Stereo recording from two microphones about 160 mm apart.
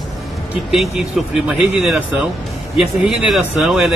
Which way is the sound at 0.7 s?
Centre (ahead or behind).